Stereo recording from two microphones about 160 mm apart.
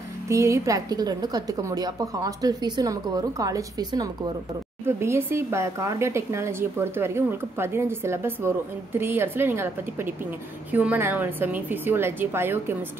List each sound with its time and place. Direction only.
0.3 s a woman's voice: 20° right (ahead or behind)